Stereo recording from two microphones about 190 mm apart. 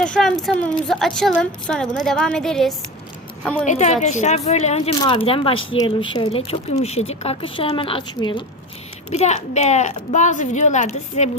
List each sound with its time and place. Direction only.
0.0 s a woman's voice: 5° left (ahead or behind)
3.7 s a woman's voice: 40° left (ahead or behind)
9.0 s speech: 35° left (ahead or behind)